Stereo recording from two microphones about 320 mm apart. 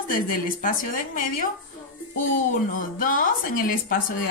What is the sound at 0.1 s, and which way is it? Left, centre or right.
A woman's voice, left.